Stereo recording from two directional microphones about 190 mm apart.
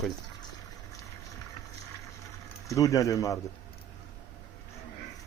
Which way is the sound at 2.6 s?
15° left (ahead or behind).